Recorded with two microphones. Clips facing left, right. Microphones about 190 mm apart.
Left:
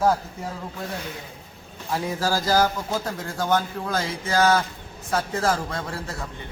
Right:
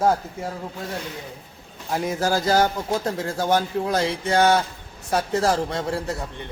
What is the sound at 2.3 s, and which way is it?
A man's voice, 25° right (ahead or behind).